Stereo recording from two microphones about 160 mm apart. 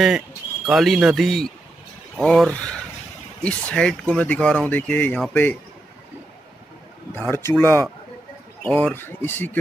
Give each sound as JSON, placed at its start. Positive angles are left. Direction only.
{"t": 0.7, "sound": "speech", "side_deg": 0}
{"t": 7.2, "sound": "speech", "side_deg": 15}